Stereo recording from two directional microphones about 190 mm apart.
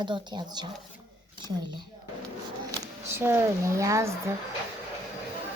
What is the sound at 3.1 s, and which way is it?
Speech, 10° right (ahead or behind).